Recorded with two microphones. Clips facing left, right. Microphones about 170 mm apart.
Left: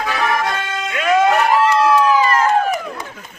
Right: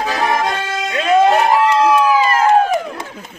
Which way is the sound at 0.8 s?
30° right (ahead or behind).